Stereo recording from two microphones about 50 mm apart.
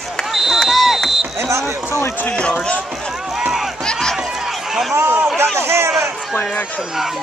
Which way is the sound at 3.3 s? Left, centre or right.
Centre.